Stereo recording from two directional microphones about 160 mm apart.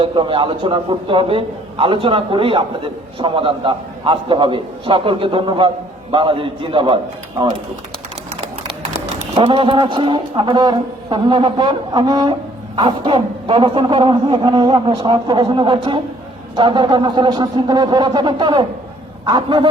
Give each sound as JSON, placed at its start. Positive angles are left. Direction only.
{"t": 0.0, "sound": "a man's voice", "side_deg": -30}
{"t": 9.1, "sound": "a man's voice", "side_deg": -40}